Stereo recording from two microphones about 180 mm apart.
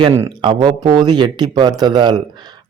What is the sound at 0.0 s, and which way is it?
Speech, 15° right (ahead or behind).